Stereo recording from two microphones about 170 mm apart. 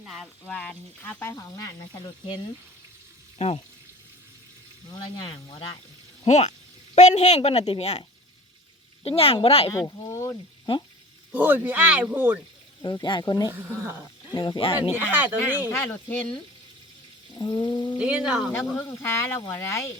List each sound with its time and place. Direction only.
0.0 s speech: centre (ahead or behind); by 3.6 s 35° left (ahead or behind)
4.9 s speech: 25° left (ahead or behind)
6.2 s a woman's voice: 40° left (ahead or behind)
9.0 s a woman's voice: 35° left (ahead or behind)
9.7 s speech: 20° left (ahead or behind)
11.3 s speech: 10° right (ahead or behind)
12.8 s speech: 25° left (ahead or behind)
13.5 s speech: 15° right (ahead or behind)
14.3 s speech: 25° left (ahead or behind)
14.9 s speech: 10° right (ahead or behind)
15.7 s speech: 10° left (ahead or behind)
17.3 s speech: 25° left (ahead or behind)
18.0 s speech: 5° right (ahead or behind)
18.9 s speech: 15° left (ahead or behind)